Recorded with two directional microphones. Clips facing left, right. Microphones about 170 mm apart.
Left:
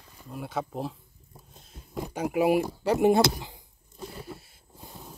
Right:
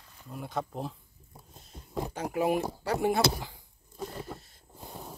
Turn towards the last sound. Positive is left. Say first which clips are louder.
# left 5 dB
turn(degrees=20)  # may be behind; listen again after turning